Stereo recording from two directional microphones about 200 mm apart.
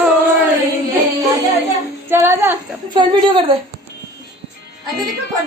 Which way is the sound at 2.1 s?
10° right (ahead or behind).